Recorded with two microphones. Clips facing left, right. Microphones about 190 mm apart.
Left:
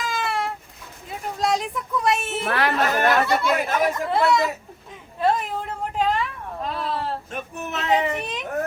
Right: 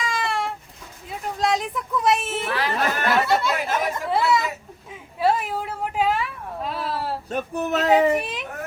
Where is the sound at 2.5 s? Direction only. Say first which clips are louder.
Left 4 dB; 60° left (ahead or behind).